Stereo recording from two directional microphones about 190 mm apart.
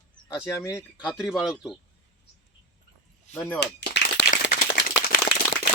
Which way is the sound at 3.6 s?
65° left (ahead or behind).